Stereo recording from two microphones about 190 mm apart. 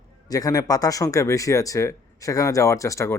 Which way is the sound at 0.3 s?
20° left (ahead or behind).